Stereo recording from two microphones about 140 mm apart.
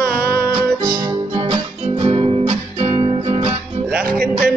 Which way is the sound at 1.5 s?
40° right (ahead or behind).